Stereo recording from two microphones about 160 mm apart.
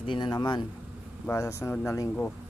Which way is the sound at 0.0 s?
30° left (ahead or behind).